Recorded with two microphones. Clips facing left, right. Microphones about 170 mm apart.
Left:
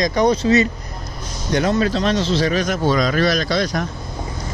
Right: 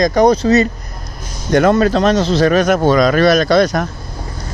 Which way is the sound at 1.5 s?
50° right (ahead or behind).